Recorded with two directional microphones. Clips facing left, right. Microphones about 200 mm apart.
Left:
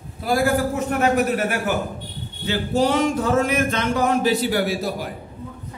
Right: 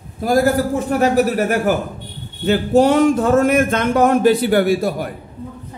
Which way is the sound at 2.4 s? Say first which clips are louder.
Right 7 dB; 50° right (ahead or behind).